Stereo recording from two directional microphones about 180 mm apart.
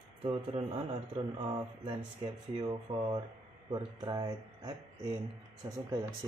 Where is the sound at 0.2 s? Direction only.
35° right (ahead or behind).